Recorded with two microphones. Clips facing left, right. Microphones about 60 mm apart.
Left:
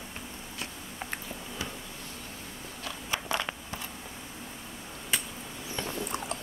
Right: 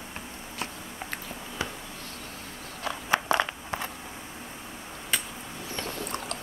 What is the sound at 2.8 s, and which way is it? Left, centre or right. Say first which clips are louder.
Biting: right 8 dB; right.